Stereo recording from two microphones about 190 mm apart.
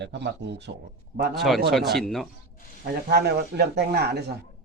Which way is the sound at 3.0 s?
60° right (ahead or behind).